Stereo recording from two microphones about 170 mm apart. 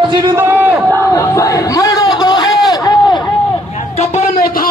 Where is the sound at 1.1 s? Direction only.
20° left (ahead or behind).